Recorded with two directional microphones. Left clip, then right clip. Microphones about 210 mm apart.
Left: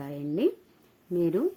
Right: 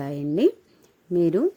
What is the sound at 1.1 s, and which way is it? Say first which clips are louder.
Speech: right 5 dB; 30° right (ahead or behind).